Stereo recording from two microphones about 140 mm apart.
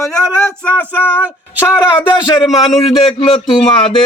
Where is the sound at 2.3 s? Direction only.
Centre (ahead or behind).